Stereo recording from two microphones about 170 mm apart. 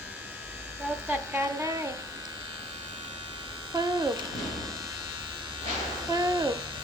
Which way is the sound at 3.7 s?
25° right (ahead or behind).